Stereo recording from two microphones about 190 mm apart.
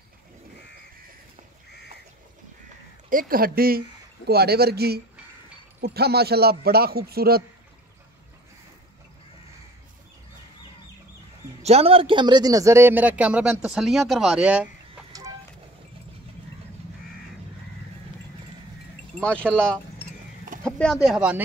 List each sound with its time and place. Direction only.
3.1 s a man's voice: 50° right (ahead or behind)
11.6 s a man's voice: 30° right (ahead or behind); by 14.7 s 5° right (ahead or behind)
19.1 s speech: 5° left (ahead or behind)